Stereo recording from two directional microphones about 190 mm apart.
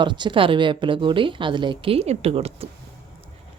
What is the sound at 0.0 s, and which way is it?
A woman's voice, 25° right (ahead or behind).